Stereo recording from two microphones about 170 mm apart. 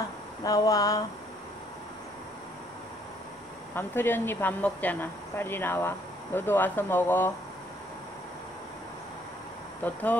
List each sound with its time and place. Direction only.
0.4 s a sound: 20° left (ahead or behind)
3.7 s speech: 10° left (ahead or behind)
9.8 s speech: 10° left (ahead or behind)